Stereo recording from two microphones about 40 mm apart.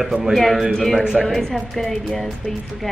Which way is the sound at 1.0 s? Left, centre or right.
Centre.